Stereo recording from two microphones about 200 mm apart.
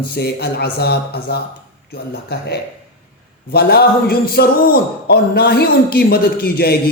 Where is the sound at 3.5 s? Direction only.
50° left (ahead or behind).